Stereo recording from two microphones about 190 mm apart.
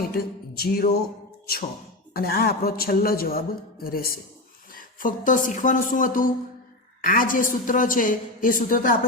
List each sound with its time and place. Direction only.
0.0 s music: 55° left (ahead or behind)
2.1 s a man's voice: 50° left (ahead or behind)